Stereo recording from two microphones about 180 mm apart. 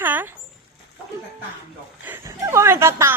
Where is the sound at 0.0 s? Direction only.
10° right (ahead or behind).